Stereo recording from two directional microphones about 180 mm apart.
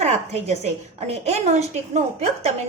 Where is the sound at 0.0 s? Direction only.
40° right (ahead or behind).